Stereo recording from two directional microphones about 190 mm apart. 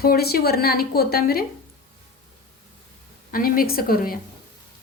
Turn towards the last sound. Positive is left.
turn(degrees=50)  # may be behind; listen again after turning